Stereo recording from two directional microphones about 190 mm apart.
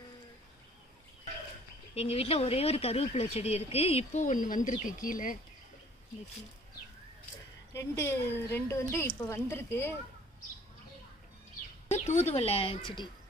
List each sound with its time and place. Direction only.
2.0 s speech: 30° left (ahead or behind)
7.7 s a woman's voice: 15° left (ahead or behind)
12.0 s speech: 35° left (ahead or behind)